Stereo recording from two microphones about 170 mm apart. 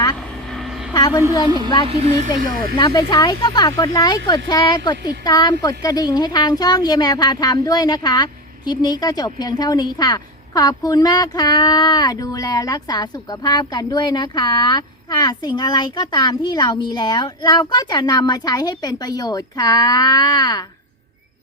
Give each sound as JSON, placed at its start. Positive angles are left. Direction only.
{"t": 0.5, "sound": "vehicle", "side_deg": 0}
{"t": 0.9, "sound": "a woman's voice", "side_deg": 25}
{"t": 1.9, "sound": "speech", "side_deg": -40}
{"t": 2.4, "sound": "speech", "side_deg": -60}
{"t": 2.7, "sound": "speech", "side_deg": 25}